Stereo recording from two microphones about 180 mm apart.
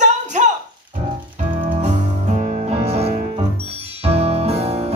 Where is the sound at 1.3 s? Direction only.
45° right (ahead or behind).